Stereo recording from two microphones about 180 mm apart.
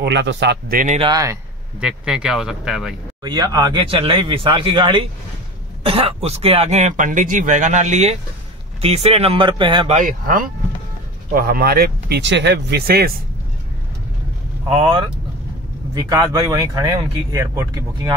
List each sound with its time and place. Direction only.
0.0 s a man's voice: 80° right
0.9 s speech: 25° right (ahead or behind)
1.8 s speech: 5° right (ahead or behind)
3.3 s speech: 25° right (ahead or behind)
9.9 s speech: 45° right (ahead or behind)
11.3 s speech: 55° right (ahead or behind)
14.7 s speech: 30° right (ahead or behind)